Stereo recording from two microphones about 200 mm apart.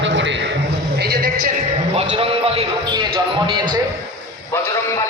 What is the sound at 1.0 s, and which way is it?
Speech, 50° right (ahead or behind).